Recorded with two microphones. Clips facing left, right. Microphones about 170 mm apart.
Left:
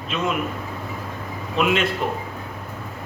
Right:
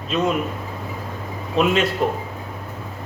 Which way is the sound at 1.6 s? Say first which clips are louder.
Right 2 dB; 40° right (ahead or behind).